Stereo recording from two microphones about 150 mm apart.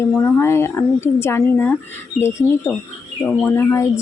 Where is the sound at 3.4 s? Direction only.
15° left (ahead or behind).